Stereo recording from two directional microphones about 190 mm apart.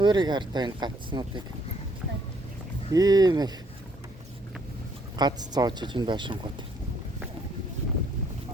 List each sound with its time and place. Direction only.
0.0 s speech: 25° right (ahead or behind)
2.9 s speech: 20° right (ahead or behind)
5.1 s speech: 20° right (ahead or behind)